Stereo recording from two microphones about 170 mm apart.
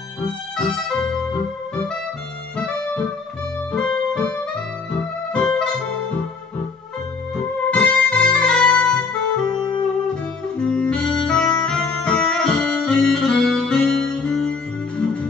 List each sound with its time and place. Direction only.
0.6 s music: 5° left (ahead or behind)
2.5 s music: 5° left (ahead or behind)
7.3 s music: 5° left (ahead or behind)
9.5 s music: 25° left (ahead or behind)
10.6 s music: 5° left (ahead or behind)